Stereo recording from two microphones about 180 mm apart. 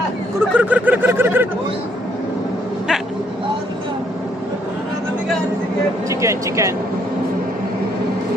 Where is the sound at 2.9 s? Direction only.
5° right (ahead or behind).